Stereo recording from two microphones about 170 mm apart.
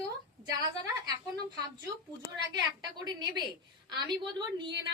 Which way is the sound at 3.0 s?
25° right (ahead or behind).